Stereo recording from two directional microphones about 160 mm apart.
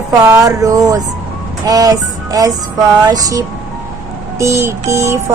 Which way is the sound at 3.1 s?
20° right (ahead or behind).